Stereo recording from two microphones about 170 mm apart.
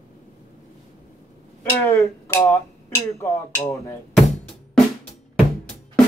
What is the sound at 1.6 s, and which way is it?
Speech, 15° left (ahead or behind).